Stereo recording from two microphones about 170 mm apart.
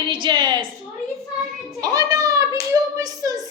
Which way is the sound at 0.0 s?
25° right (ahead or behind).